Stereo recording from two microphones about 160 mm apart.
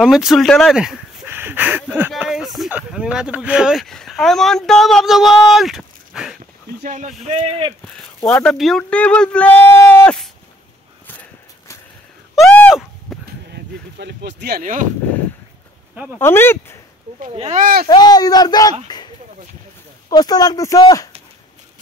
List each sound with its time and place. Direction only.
0.0 s speech: 5° right (ahead or behind)
6.8 s speech: 50° right (ahead or behind)
8.4 s speech: centre (ahead or behind)
11.1 s a sound: 15° left (ahead or behind)
13.9 s speech: 90° right
14.6 s speech: 55° right (ahead or behind)
16.1 s speech: 15° left (ahead or behind)
17.6 s speech: 65° right (ahead or behind)
17.8 s speech: 25° left (ahead or behind)
20.1 s speech: 25° left (ahead or behind)